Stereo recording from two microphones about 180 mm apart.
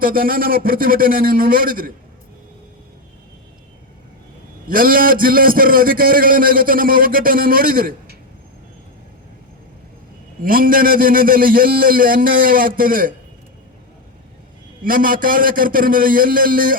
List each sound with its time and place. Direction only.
0.0 s a man's voice: 55° right (ahead or behind)
4.7 s a man's voice: 50° right (ahead or behind)
10.4 s a man's voice: 50° right (ahead or behind)
14.8 s a man's voice: 50° right (ahead or behind)